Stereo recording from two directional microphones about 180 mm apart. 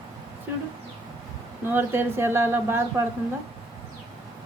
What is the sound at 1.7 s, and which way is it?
Speech, 10° right (ahead or behind).